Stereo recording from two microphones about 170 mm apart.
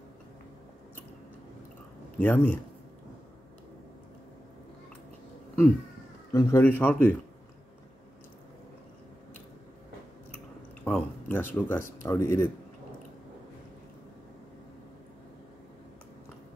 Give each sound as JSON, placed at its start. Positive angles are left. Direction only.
{"t": 2.1, "sound": "speech", "side_deg": 10}
{"t": 6.3, "sound": "speech", "side_deg": 15}
{"t": 10.9, "sound": "speech", "side_deg": 10}